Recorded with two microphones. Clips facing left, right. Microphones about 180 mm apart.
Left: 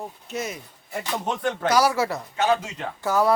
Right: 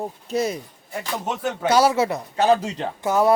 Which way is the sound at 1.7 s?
25° right (ahead or behind).